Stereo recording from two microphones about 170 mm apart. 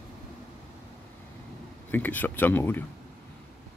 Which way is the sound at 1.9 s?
10° left (ahead or behind).